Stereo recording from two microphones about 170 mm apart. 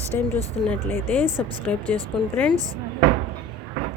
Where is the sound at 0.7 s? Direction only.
10° left (ahead or behind).